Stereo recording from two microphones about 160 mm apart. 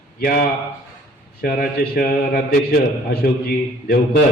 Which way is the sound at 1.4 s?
70° left (ahead or behind).